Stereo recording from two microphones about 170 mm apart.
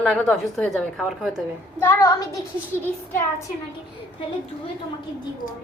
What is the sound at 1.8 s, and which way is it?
Speech, 15° left (ahead or behind).